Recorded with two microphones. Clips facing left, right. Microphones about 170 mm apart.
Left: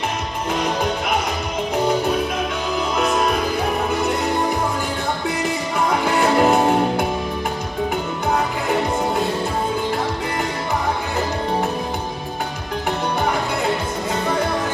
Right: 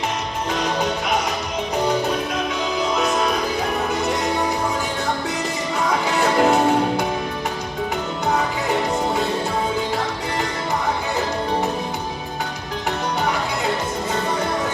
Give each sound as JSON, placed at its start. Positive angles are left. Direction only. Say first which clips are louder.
{"t": 6.1, "sound": "music", "louder": "left 1 dB", "side_deg": 55}